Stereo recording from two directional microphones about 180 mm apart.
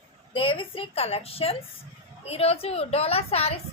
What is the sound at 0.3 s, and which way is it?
A woman's voice, 30° left (ahead or behind).